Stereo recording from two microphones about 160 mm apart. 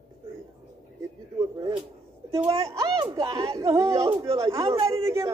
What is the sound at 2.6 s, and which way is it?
A man's voice, 20° right (ahead or behind).